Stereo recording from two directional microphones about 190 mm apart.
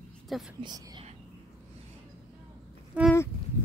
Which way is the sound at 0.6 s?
20° right (ahead or behind).